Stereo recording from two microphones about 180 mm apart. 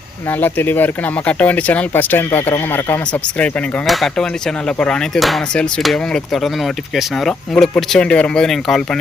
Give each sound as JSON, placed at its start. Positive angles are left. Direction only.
{"t": 0.4, "sound": "speech", "side_deg": 10}